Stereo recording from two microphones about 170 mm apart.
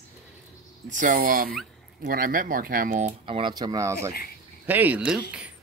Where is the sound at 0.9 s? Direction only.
50° right (ahead or behind).